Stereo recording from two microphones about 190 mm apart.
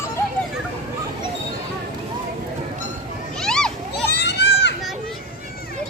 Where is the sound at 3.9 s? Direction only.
60° left (ahead or behind).